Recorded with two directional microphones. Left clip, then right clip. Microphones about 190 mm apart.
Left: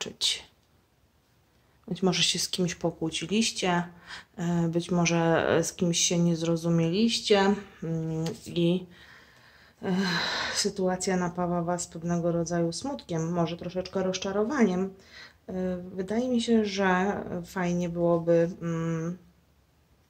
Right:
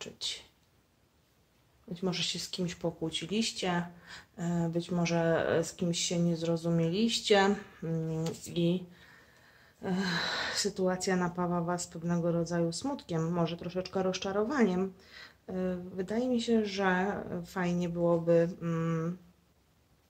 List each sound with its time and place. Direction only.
0.0 s speech: 30° left (ahead or behind)
2.0 s speech: 25° left (ahead or behind); by 19.1 s 5° right (ahead or behind)